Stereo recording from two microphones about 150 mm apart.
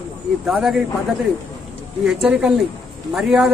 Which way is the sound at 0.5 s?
5° right (ahead or behind).